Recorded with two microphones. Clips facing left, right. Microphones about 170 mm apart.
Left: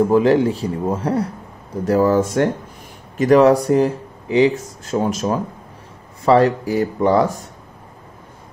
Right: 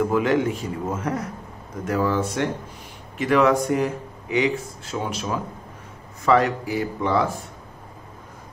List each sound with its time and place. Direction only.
0.0 s a man's voice: 35° left (ahead or behind)